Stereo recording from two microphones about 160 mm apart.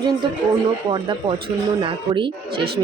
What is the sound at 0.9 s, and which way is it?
Speech, 30° right (ahead or behind).